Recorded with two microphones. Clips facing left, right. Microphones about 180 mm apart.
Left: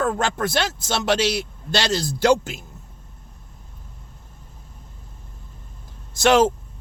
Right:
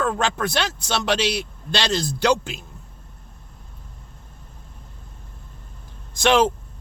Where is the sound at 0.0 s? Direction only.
45° left (ahead or behind).